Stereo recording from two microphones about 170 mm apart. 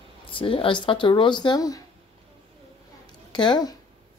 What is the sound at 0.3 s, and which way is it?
Speech, 30° left (ahead or behind).